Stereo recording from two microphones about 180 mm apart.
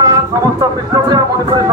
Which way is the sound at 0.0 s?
20° right (ahead or behind).